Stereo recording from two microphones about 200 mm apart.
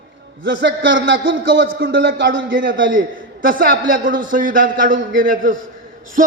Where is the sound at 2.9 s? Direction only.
45° right (ahead or behind).